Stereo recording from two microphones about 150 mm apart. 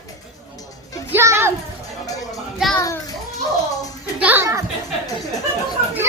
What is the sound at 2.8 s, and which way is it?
Children playing, 20° left (ahead or behind).